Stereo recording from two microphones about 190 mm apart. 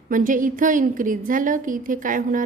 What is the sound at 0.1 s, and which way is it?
A woman's voice, 45° right (ahead or behind).